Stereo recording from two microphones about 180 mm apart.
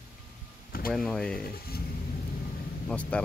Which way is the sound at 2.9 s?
5° left (ahead or behind).